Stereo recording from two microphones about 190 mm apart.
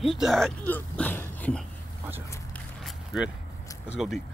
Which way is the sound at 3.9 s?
Centre (ahead or behind).